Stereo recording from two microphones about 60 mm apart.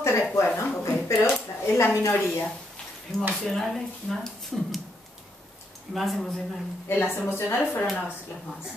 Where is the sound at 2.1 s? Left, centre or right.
Left.